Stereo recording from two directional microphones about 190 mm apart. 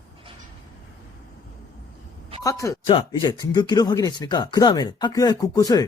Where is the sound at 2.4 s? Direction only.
15° left (ahead or behind).